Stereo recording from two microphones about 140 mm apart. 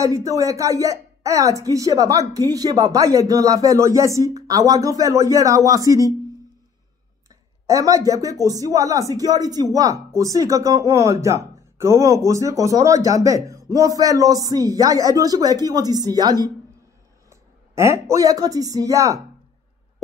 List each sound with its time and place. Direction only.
0.0 s speech: 25° right (ahead or behind)
7.6 s a man's voice: 25° right (ahead or behind)